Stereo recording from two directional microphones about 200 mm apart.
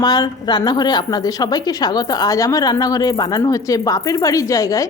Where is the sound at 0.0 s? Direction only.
20° left (ahead or behind).